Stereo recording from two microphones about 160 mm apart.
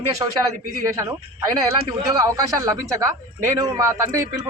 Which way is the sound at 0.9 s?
15° right (ahead or behind).